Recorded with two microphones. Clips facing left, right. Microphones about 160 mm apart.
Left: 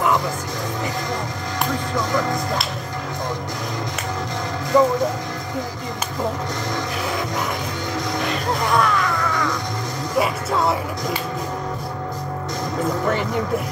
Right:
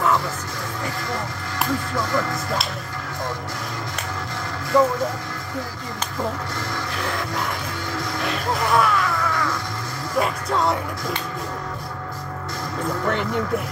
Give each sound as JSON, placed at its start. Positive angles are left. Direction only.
{"t": 2.0, "sound": "speech", "side_deg": 20}
{"t": 4.7, "sound": "speech", "side_deg": 15}
{"t": 8.2, "sound": "music", "side_deg": 0}
{"t": 13.1, "sound": "speech", "side_deg": 0}